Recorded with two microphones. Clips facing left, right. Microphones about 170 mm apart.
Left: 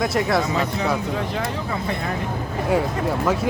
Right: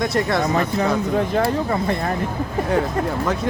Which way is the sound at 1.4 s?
45° right (ahead or behind).